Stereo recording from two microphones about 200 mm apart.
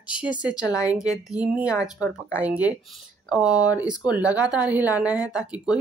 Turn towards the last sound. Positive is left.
turn(degrees=-5)  # may be behind; listen again after turning